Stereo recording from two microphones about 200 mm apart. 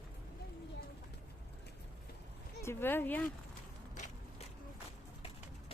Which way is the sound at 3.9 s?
35° left (ahead or behind).